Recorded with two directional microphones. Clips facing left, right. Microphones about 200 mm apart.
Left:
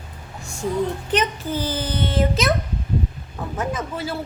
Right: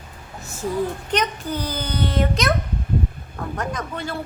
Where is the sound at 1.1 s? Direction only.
5° left (ahead or behind).